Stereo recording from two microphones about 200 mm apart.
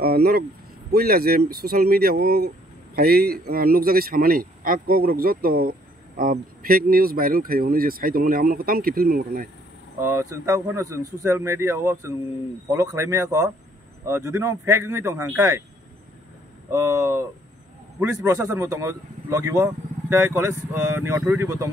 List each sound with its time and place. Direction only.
0.0 s speech: 50° right (ahead or behind)
9.9 s speech: 15° right (ahead or behind)
16.7 s speech: 15° right (ahead or behind)